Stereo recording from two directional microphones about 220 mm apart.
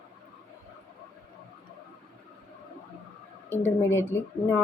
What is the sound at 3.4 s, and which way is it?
Speech, 10° left (ahead or behind).